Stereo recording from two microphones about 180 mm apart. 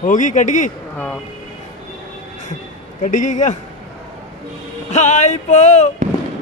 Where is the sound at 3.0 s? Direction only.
45° left (ahead or behind).